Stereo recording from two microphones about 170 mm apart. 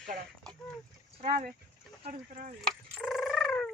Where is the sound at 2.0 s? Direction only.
45° right (ahead or behind).